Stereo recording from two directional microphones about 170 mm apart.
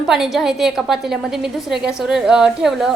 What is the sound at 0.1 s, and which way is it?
A woman's voice, centre (ahead or behind).